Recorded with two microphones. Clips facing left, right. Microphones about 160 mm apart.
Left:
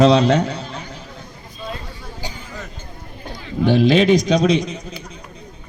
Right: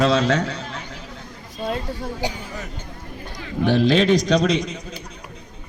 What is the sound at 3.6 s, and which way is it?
Speech, 15° left (ahead or behind).